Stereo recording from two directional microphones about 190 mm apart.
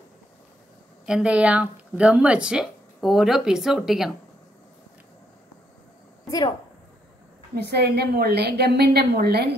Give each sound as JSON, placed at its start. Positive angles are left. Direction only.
{"t": 1.0, "sound": "speech", "side_deg": -5}
{"t": 7.5, "sound": "a woman's voice", "side_deg": -60}